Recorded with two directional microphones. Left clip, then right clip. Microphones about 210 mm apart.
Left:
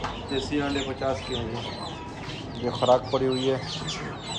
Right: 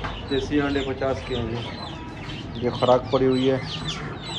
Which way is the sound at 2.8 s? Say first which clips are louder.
Right 2 dB; 10° left (ahead or behind).